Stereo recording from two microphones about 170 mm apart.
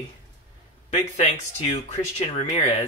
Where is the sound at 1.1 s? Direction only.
40° left (ahead or behind).